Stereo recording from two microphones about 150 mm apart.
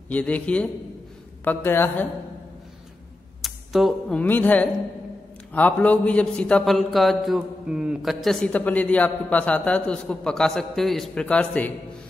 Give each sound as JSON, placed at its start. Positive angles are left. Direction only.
{"t": 0.1, "sound": "a woman's voice", "side_deg": 10}
{"t": 3.4, "sound": "a sound", "side_deg": 0}
{"t": 4.2, "sound": "a woman's voice", "side_deg": 10}